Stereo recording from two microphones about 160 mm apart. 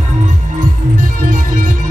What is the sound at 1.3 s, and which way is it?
Music, 55° right (ahead or behind).